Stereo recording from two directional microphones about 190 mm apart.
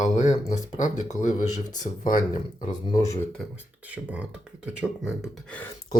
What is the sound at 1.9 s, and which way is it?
Speech, 30° left (ahead or behind).